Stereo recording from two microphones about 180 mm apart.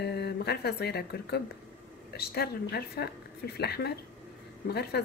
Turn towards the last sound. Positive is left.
turn(degrees=65)  # may be behind; listen again after turning